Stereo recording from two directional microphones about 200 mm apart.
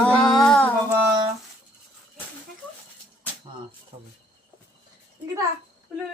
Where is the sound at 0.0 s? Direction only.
5° left (ahead or behind).